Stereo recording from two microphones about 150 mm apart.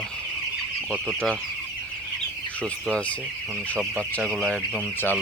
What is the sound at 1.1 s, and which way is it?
Speech, 5° left (ahead or behind).